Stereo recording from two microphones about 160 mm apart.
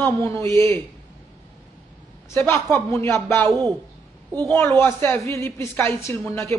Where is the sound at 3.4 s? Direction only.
25° right (ahead or behind).